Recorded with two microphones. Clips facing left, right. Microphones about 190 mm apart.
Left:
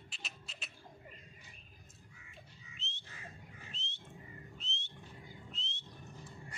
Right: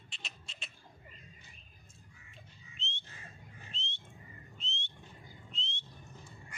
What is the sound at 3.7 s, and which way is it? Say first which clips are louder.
Whistling: right 3 dB; 5° left (ahead or behind).